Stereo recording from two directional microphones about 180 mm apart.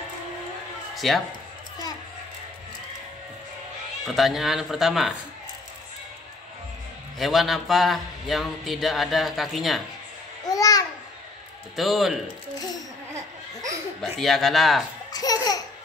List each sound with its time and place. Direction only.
0.9 s speech: centre (ahead or behind)
4.0 s speech: centre (ahead or behind)
7.2 s speech: centre (ahead or behind)
10.5 s babbling: 20° left (ahead or behind)
11.7 s speech: centre (ahead or behind)
14.0 s speech: centre (ahead or behind)
15.1 s laughter: 20° left (ahead or behind)